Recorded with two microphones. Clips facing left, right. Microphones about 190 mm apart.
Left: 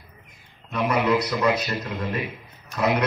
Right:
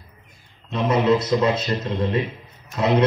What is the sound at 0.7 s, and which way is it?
A man's voice, 25° right (ahead or behind).